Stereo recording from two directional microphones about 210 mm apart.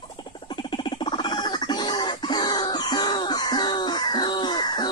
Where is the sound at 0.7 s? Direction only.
20° left (ahead or behind).